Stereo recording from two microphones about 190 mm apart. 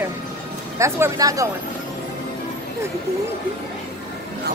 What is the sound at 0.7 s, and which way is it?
Speech, 15° right (ahead or behind).